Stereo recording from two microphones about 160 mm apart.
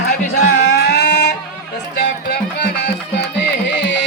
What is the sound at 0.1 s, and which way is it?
Music, 90° left.